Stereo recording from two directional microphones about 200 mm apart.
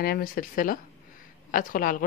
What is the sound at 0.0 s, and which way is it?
Speech, 50° left (ahead or behind).